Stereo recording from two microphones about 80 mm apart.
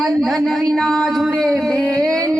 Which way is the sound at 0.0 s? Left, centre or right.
Centre.